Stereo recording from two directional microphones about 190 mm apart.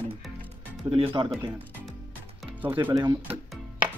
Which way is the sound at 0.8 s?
25° right (ahead or behind).